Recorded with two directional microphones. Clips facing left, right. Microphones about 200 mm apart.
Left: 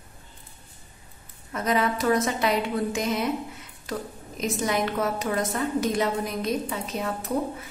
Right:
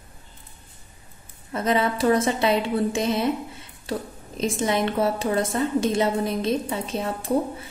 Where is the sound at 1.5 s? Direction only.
30° right (ahead or behind).